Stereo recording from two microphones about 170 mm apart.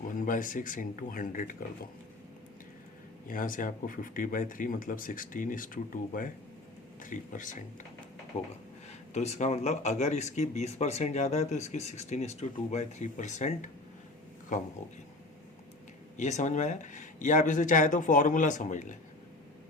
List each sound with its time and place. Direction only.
0.2 s speech: 50° left (ahead or behind)
3.2 s speech: 55° left (ahead or behind)
8.9 s speech: 40° left (ahead or behind)
16.1 s speech: 45° left (ahead or behind)